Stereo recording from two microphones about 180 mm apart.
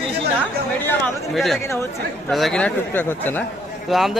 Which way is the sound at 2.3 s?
Centre (ahead or behind).